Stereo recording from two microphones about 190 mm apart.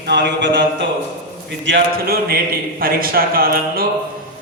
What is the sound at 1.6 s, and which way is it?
A man's voice, 60° right (ahead or behind).